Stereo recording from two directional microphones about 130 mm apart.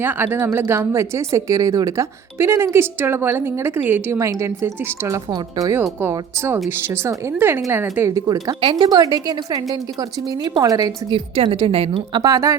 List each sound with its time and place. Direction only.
0.0 s a woman's voice: 15° right (ahead or behind)
11.1 s a woman's voice: 40° right (ahead or behind); by 12.5 s 25° right (ahead or behind)